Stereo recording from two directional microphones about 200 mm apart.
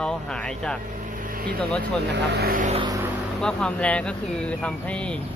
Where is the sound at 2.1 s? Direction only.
50° right (ahead or behind).